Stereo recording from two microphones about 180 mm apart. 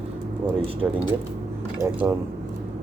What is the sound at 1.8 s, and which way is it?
Speech, 15° right (ahead or behind).